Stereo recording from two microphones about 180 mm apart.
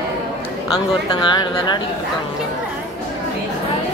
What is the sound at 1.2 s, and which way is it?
Speech, 25° left (ahead or behind).